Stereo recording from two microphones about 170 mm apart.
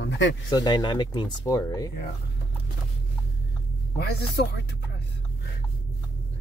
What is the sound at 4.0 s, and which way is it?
Speech, 75° left (ahead or behind).